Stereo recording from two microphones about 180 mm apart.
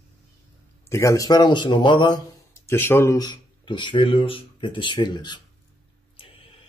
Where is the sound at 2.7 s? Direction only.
15° left (ahead or behind).